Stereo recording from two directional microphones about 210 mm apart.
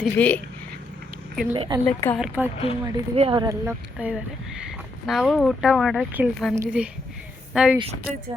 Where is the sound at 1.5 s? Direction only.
25° right (ahead or behind).